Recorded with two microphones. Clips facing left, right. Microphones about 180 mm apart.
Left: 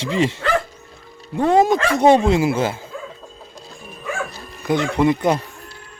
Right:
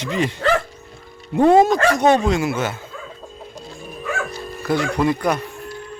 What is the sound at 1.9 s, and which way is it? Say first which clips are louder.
Speech: left 2 dB; 30° left (ahead or behind).